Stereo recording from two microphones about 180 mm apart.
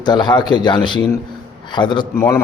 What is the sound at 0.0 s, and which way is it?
Speech, 25° left (ahead or behind).